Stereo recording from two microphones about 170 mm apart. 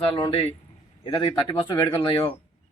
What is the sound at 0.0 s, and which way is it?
Speech, 30° left (ahead or behind).